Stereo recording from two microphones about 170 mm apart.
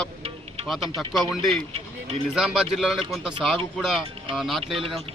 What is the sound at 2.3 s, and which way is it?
A man's voice, 5° right (ahead or behind).